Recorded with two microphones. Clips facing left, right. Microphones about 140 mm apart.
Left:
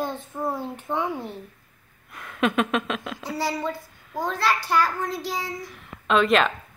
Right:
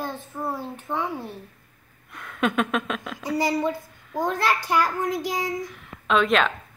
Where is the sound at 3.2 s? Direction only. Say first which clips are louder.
Right 6 dB; 15° right (ahead or behind).